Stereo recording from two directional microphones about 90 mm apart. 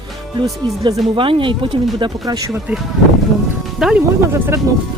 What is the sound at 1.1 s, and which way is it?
Speech, 70° right (ahead or behind).